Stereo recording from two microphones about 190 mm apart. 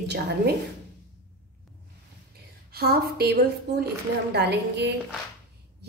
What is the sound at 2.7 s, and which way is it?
A woman's voice, 55° right (ahead or behind).